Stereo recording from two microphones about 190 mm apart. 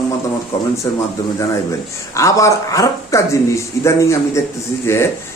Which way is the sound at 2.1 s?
15° left (ahead or behind).